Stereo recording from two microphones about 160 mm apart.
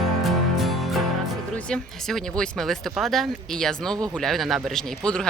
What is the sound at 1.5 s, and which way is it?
Speech, 5° left (ahead or behind).